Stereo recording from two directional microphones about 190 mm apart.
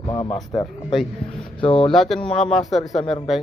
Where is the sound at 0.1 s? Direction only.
25° left (ahead or behind).